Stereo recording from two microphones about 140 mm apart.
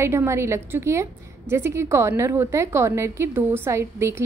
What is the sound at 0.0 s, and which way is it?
A woman's voice, 20° right (ahead or behind).